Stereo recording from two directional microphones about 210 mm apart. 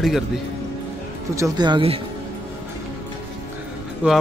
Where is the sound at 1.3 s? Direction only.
15° right (ahead or behind).